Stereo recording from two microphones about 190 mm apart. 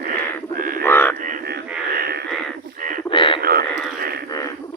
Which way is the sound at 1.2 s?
50° right (ahead or behind).